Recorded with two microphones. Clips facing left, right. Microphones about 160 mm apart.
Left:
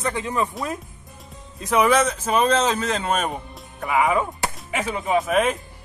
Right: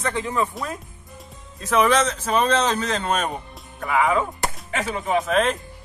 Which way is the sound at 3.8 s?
15° left (ahead or behind).